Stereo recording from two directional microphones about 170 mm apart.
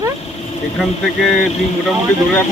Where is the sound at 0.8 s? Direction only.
Centre (ahead or behind).